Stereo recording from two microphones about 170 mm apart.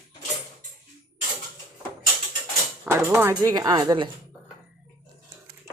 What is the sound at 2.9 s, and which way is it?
Speech, 10° right (ahead or behind).